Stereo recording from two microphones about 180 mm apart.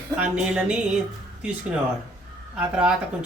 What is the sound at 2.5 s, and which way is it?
Speech, 5° right (ahead or behind).